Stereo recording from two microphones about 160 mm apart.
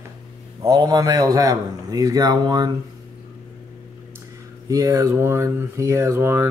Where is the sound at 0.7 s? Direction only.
25° right (ahead or behind).